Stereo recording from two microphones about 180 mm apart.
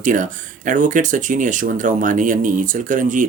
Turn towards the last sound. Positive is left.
turn(degrees=-45)  # may be behind; listen again after turning